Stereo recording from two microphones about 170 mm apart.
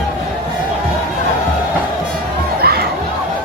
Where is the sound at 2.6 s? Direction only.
65° right (ahead or behind).